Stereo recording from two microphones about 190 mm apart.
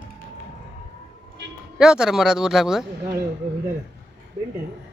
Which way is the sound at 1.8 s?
5° right (ahead or behind).